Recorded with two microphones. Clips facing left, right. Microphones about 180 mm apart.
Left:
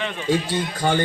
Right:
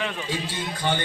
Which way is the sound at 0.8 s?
40° left (ahead or behind).